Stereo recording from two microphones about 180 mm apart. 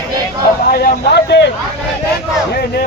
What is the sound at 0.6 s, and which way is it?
Speech, 55° left (ahead or behind).